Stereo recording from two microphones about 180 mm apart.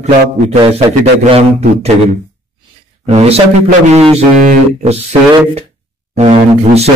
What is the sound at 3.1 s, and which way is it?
A man's voice, 35° right (ahead or behind).